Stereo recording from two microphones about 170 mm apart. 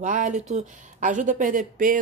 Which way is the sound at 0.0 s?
50° right (ahead or behind).